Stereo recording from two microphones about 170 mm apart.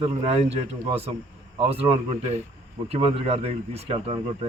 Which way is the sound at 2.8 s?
35° right (ahead or behind).